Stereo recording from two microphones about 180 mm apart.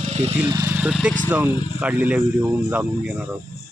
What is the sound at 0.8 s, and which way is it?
Speech, 5° right (ahead or behind).